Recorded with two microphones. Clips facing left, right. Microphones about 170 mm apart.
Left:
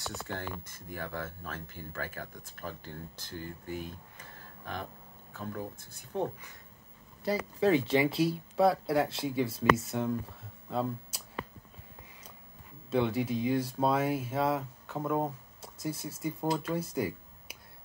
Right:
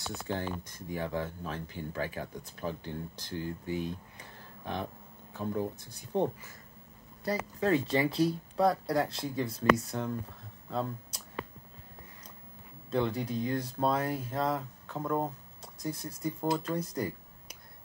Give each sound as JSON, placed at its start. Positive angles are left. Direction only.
{"t": 0.0, "sound": "speech", "side_deg": -15}
{"t": 7.9, "sound": "speech", "side_deg": 5}
{"t": 12.9, "sound": "speech", "side_deg": 5}